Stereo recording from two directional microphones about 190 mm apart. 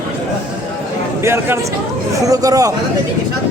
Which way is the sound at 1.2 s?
15° right (ahead or behind).